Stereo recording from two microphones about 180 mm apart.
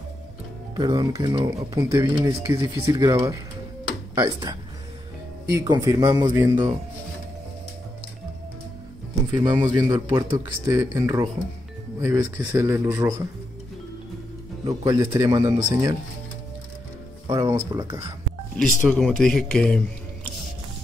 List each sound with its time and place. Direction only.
0.7 s speech: 20° right (ahead or behind)
4.2 s speech: 20° right (ahead or behind)
6.3 s speech: 10° right (ahead or behind)
9.4 s speech: 20° right (ahead or behind)
14.6 s speech: 20° right (ahead or behind)
17.3 s speech: 20° right (ahead or behind)
18.6 s speech: 5° left (ahead or behind)